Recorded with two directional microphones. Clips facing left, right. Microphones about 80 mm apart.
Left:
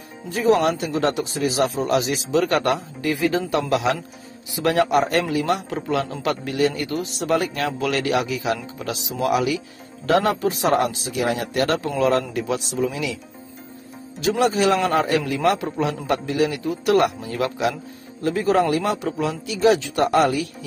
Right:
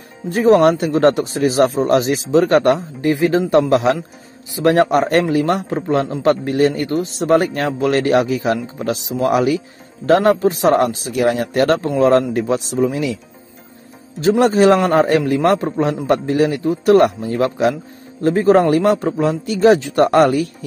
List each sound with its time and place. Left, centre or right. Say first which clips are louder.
0.3 s speech: right 7 dB; right
5.7 s a man's voice: right 6 dB; right
14.2 s speech: right 7 dB; right